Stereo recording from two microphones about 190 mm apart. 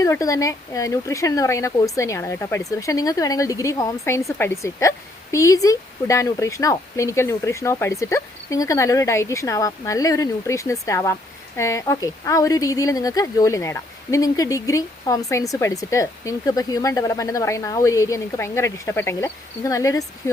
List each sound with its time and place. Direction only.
0.0 s speech: 15° left (ahead or behind)